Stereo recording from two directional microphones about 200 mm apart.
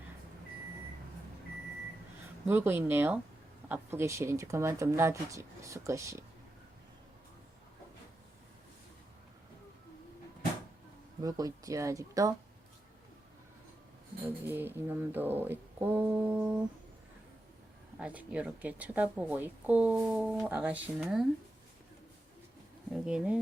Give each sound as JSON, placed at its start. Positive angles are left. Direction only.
{"t": 2.5, "sound": "speech", "side_deg": -10}
{"t": 11.2, "sound": "speech", "side_deg": -20}
{"t": 14.4, "sound": "speech", "side_deg": -10}
{"t": 18.0, "sound": "speech", "side_deg": -5}
{"t": 22.9, "sound": "speech", "side_deg": -5}